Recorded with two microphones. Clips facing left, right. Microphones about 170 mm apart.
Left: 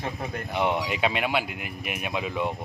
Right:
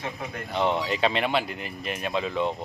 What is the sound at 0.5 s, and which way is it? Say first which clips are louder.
Speech: right 1 dB; 15° left (ahead or behind).